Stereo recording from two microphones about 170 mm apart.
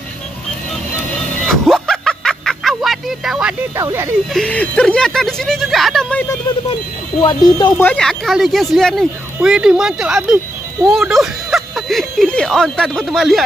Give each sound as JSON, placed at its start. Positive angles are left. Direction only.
{"t": 1.5, "sound": "a sound", "side_deg": 5}
{"t": 3.7, "sound": "speech", "side_deg": -15}
{"t": 4.3, "sound": "speech", "side_deg": 5}
{"t": 7.2, "sound": "speech", "side_deg": 25}
{"t": 7.7, "sound": "speech", "side_deg": 5}